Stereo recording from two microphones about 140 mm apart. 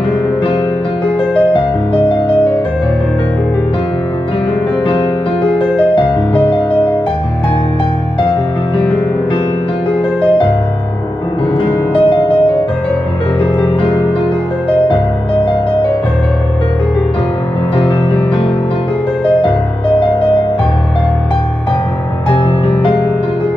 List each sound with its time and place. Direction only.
4.8 s music: 40° left (ahead or behind)
11.9 s music: 35° left (ahead or behind)
13.4 s music: 40° left (ahead or behind)
20.0 s music: 35° left (ahead or behind)